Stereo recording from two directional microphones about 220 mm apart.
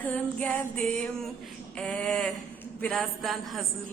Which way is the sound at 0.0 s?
5° left (ahead or behind).